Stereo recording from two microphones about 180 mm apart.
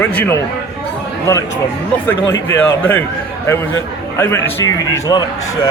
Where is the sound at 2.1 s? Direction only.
10° left (ahead or behind).